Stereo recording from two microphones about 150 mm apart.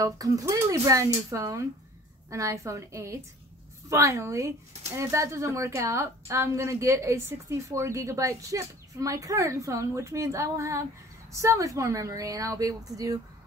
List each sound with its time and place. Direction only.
0.0 s speech: 20° right (ahead or behind)